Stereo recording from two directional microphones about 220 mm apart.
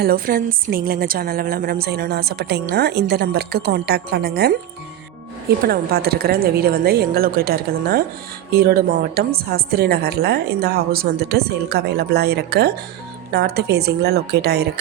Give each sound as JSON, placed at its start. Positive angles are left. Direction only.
{"t": 0.0, "sound": "a woman's voice", "side_deg": -40}
{"t": 5.6, "sound": "a woman's voice", "side_deg": -45}